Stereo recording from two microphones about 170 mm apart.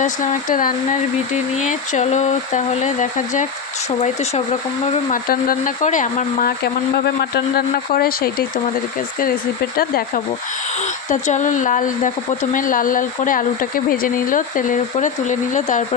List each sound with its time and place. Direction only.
0.0 s speech: 50° left (ahead or behind)
4.9 s speech: 55° left (ahead or behind)
6.9 s speech: 75° left (ahead or behind)
10.8 s speech: 45° left (ahead or behind)